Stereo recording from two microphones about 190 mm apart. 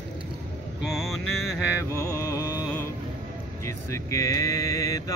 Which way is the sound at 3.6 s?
15° left (ahead or behind).